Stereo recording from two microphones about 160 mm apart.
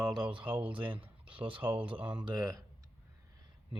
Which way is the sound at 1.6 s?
10° right (ahead or behind).